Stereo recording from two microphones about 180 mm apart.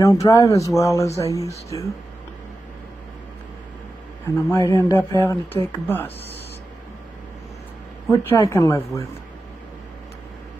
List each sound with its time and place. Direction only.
0.0 s speech: 20° left (ahead or behind)
4.5 s speech: 15° left (ahead or behind)
8.1 s speech: 15° left (ahead or behind)